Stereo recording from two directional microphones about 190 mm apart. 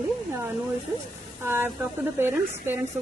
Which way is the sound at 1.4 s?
10° right (ahead or behind).